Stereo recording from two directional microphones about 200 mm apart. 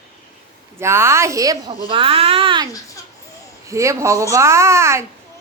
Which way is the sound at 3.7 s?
15° right (ahead or behind).